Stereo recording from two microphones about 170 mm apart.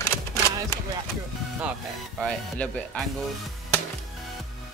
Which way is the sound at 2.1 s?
5° left (ahead or behind).